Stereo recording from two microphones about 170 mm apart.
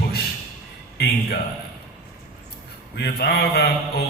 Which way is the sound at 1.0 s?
70° left (ahead or behind).